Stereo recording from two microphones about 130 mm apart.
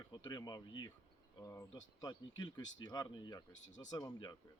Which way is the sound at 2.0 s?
30° left (ahead or behind).